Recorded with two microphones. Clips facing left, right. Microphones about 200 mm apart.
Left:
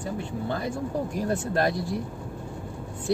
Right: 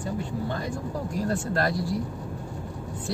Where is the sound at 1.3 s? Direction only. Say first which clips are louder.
Left 2 dB; 20° left (ahead or behind).